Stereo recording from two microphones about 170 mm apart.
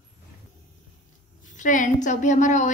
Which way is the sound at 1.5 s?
50° left (ahead or behind).